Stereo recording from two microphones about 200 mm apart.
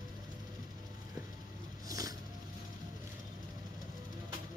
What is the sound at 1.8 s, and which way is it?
Music, 15° right (ahead or behind).